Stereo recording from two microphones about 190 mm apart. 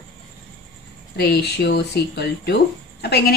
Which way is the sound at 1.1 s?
55° left (ahead or behind).